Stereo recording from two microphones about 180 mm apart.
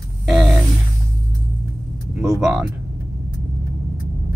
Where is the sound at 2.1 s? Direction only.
10° right (ahead or behind).